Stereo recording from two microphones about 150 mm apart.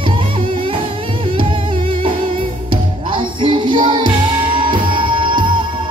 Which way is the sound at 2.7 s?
30° right (ahead or behind).